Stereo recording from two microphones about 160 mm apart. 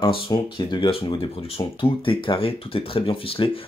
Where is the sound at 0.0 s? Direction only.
30° left (ahead or behind).